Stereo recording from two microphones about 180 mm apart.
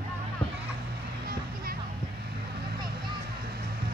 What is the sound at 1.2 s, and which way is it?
Music, 55° right (ahead or behind).